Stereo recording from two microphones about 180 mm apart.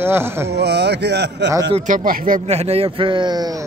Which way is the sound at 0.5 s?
65° right (ahead or behind).